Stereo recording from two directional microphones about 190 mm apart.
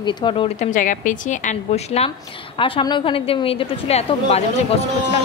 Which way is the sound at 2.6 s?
25° left (ahead or behind).